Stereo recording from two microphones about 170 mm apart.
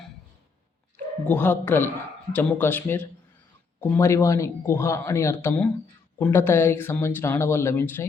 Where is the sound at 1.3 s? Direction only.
10° left (ahead or behind).